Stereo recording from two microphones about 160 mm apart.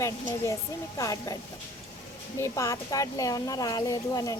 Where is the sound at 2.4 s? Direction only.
20° left (ahead or behind).